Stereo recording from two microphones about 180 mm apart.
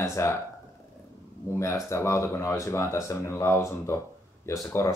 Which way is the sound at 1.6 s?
15° left (ahead or behind).